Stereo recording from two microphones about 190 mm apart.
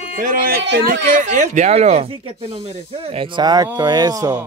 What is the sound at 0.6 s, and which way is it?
Speech, 70° right (ahead or behind).